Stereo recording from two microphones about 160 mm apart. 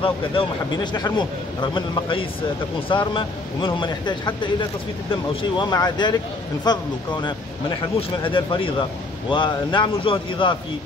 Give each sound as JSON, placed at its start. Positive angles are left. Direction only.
{"t": 0.9, "sound": "a man's voice", "side_deg": 25}